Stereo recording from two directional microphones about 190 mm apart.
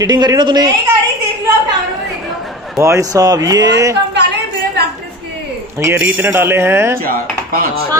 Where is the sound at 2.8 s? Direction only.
15° right (ahead or behind).